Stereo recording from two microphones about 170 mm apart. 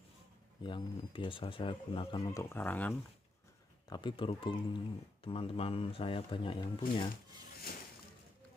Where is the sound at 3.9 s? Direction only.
25° left (ahead or behind).